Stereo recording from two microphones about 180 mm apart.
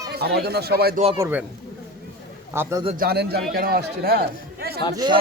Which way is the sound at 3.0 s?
60° right (ahead or behind).